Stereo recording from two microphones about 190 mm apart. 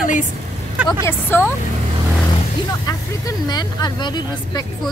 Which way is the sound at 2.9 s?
20° left (ahead or behind).